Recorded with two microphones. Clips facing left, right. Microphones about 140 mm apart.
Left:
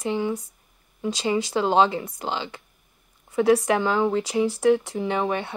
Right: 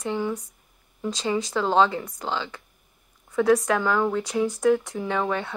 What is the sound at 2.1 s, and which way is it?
Speech, 20° left (ahead or behind).